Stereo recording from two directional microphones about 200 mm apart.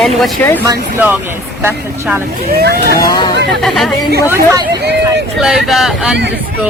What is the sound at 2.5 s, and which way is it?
Speech, 50° right (ahead or behind).